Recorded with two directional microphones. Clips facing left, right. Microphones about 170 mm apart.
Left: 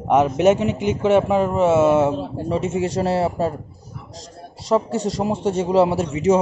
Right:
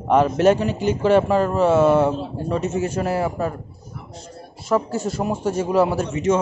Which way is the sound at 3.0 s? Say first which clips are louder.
Left 4 dB; 30° left (ahead or behind).